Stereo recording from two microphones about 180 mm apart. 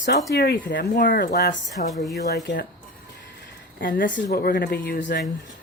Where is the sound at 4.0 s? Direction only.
45° left (ahead or behind).